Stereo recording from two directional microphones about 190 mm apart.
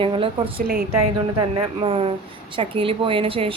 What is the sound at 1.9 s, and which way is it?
A woman's voice, 30° right (ahead or behind).